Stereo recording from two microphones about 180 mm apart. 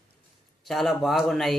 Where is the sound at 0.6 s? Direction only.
Centre (ahead or behind).